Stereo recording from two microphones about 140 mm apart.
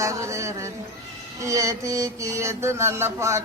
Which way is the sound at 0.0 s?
20° right (ahead or behind).